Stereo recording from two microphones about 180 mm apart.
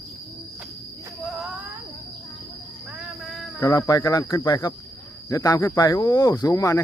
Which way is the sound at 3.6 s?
25° left (ahead or behind).